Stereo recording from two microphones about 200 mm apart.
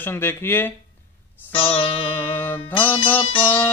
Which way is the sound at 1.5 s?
10° left (ahead or behind).